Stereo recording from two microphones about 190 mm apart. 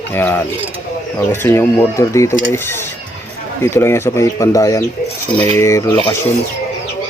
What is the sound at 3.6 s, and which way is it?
Speech, 15° left (ahead or behind).